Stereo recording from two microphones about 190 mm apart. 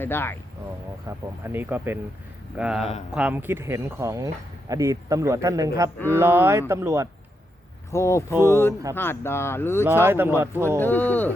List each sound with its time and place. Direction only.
0.0 s speech: 10° left (ahead or behind)
1.0 s speech: 10° right (ahead or behind)
7.9 s speech: 15° left (ahead or behind)
8.3 s speech: 15° right (ahead or behind)
9.0 s speech: 10° left (ahead or behind)
9.8 s speech: 10° right (ahead or behind)
10.8 s speech: 10° left (ahead or behind)